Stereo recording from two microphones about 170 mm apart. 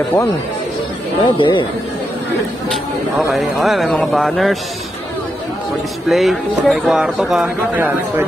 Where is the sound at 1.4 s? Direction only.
30° left (ahead or behind).